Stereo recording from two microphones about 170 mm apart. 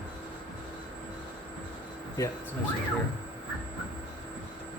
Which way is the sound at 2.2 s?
20° left (ahead or behind).